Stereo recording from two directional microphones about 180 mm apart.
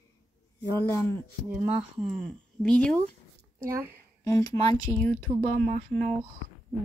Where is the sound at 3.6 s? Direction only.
15° right (ahead or behind).